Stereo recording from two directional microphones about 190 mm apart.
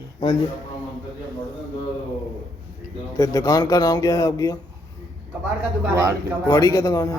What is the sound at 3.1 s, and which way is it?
Speech, 15° left (ahead or behind).